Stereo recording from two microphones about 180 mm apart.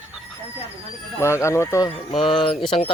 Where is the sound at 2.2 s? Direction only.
Centre (ahead or behind).